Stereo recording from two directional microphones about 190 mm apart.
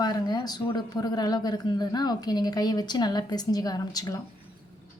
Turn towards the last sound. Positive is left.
turn(degrees=20)  # may be behind; listen again after turning